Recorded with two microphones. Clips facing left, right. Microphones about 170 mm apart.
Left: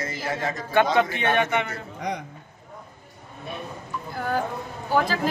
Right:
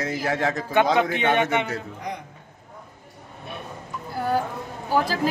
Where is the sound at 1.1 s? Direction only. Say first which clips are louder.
Right 2 dB; 20° right (ahead or behind).